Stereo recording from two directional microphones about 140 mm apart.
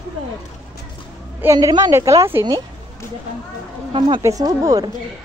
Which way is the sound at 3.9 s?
35° right (ahead or behind).